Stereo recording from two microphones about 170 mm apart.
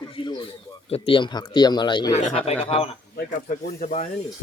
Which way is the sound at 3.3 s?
50° left (ahead or behind).